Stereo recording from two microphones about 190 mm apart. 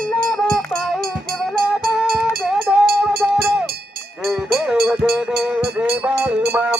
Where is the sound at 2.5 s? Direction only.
Centre (ahead or behind).